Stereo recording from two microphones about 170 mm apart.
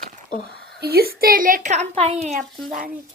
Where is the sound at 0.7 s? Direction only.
65° right (ahead or behind); by 2.2 s 40° right (ahead or behind).